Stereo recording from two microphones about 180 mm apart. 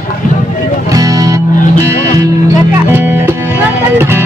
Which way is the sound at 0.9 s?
20° right (ahead or behind).